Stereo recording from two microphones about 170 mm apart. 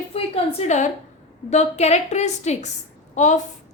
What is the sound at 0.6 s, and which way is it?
A woman's voice, 40° left (ahead or behind).